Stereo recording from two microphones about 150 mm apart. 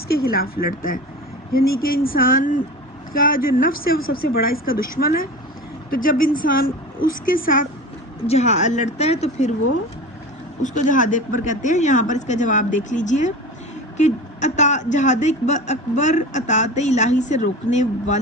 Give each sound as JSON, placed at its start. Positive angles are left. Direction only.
{"t": 0.1, "sound": "speech", "side_deg": 90}
{"t": 8.3, "sound": "a woman's voice", "side_deg": 50}
{"t": 10.6, "sound": "a woman's voice", "side_deg": 60}